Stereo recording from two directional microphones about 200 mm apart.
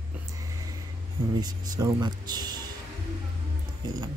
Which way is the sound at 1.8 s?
20° right (ahead or behind).